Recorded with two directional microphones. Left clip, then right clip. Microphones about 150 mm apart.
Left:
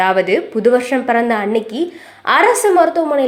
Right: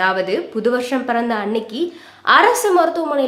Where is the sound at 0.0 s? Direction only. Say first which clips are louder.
Left 4 dB; 20° left (ahead or behind).